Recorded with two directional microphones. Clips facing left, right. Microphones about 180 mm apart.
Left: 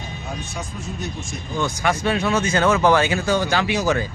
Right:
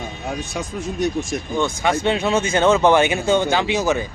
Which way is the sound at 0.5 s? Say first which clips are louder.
Right 5 dB; 90° right.